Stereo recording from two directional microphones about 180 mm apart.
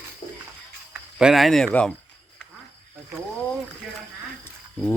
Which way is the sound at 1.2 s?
Centre (ahead or behind).